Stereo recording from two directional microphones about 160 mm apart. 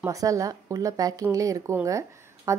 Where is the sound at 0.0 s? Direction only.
20° right (ahead or behind).